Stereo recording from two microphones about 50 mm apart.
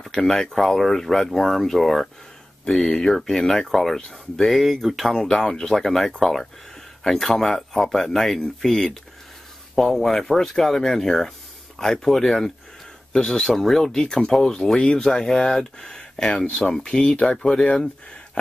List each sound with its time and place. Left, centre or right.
0.0 s speech: centre